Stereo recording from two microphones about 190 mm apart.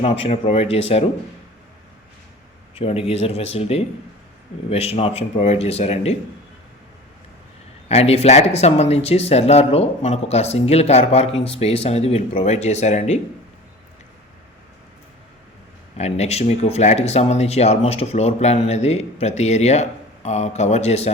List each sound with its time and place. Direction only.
0.0 s speech: 35° left (ahead or behind)
2.7 s speech: 30° left (ahead or behind)
7.9 s speech: 35° left (ahead or behind)
16.0 s speech: 35° left (ahead or behind)